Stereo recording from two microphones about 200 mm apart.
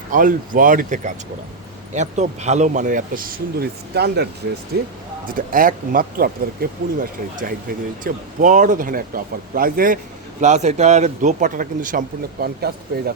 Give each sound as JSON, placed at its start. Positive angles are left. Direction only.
{"t": 0.1, "sound": "speech", "side_deg": -40}
{"t": 5.2, "sound": "speech", "side_deg": -45}